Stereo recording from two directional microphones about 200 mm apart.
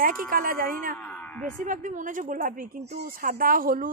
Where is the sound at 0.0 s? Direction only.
45° right (ahead or behind).